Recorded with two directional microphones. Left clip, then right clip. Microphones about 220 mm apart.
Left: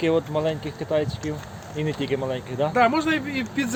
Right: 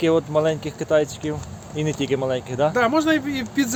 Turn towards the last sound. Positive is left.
turn(degrees=-55)  # may be behind; listen again after turning